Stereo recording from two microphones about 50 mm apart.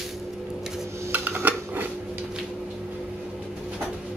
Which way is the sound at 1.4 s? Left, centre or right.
Right.